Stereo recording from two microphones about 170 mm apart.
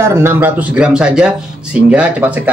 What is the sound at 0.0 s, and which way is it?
Speech, 15° right (ahead or behind).